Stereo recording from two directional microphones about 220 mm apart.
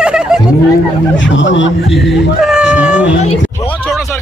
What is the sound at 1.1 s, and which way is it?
Speech, 55° left (ahead or behind).